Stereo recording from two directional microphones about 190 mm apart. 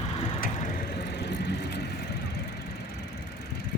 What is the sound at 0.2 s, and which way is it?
Vehicle, 30° left (ahead or behind).